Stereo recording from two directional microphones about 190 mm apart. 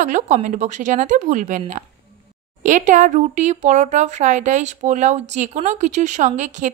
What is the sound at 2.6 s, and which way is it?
Speech, 40° right (ahead or behind).